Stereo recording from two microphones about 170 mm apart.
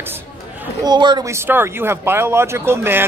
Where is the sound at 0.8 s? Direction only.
25° right (ahead or behind).